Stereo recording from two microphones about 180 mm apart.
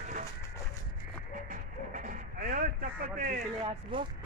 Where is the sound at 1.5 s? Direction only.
50° right (ahead or behind).